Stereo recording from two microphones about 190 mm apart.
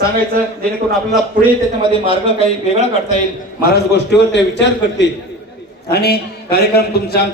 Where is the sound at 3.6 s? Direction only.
55° left (ahead or behind).